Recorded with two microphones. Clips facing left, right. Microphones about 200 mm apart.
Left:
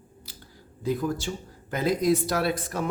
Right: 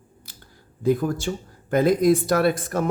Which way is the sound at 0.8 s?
55° right (ahead or behind).